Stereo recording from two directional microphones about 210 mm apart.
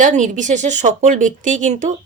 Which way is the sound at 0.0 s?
35° right (ahead or behind).